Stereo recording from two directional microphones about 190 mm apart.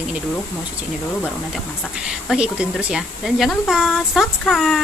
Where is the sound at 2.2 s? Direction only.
5° right (ahead or behind).